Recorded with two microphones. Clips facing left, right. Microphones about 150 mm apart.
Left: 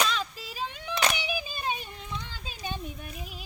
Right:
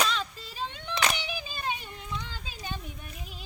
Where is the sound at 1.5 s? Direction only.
15° left (ahead or behind).